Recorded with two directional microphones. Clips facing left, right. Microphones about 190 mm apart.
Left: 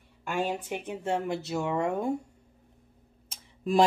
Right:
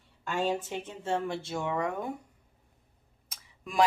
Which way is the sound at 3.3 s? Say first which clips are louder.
Left 15 dB; 30° left (ahead or behind).